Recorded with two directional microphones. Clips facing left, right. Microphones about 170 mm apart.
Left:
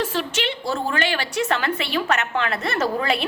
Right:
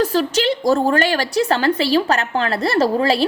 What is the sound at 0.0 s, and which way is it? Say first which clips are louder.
A woman's voice: right 7 dB; 40° right (ahead or behind).